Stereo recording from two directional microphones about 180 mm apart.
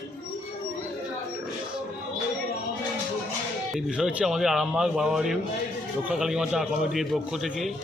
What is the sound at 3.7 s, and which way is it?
Speech, centre (ahead or behind).